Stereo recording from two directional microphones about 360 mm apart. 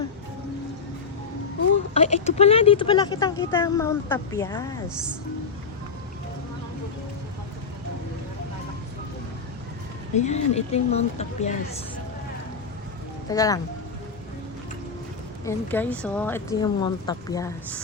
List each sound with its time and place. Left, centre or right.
1.9 s speech: centre
10.2 s speech: centre
13.3 s speech: centre
15.4 s speech: centre